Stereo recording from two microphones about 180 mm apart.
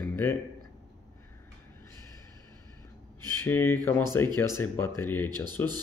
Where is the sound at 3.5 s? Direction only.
15° left (ahead or behind).